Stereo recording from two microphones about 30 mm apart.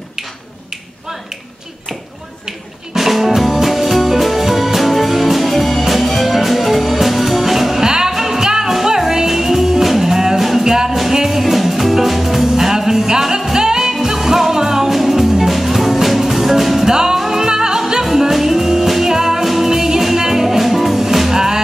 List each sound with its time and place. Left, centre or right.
2.9 s music: centre
7.8 s music: right
8.1 s music: centre